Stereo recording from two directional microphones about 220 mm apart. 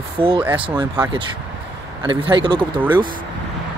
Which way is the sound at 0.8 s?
20° right (ahead or behind).